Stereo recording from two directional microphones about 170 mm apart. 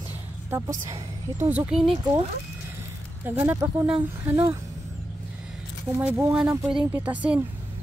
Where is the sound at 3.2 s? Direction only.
15° right (ahead or behind).